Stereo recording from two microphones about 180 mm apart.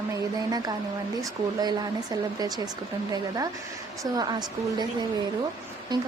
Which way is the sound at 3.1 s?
20° right (ahead or behind).